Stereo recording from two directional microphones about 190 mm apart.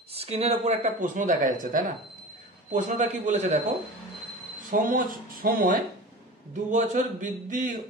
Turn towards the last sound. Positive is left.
turn(degrees=-45)  # may be behind; listen again after turning